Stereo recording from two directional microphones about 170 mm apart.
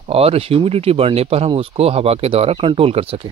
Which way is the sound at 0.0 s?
35° right (ahead or behind).